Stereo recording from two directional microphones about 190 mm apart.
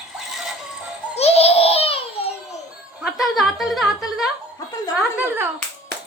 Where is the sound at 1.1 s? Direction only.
35° left (ahead or behind).